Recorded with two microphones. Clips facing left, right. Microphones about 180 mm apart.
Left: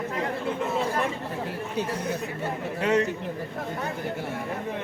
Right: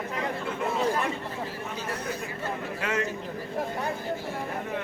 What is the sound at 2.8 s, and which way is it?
Speech, 35° left (ahead or behind).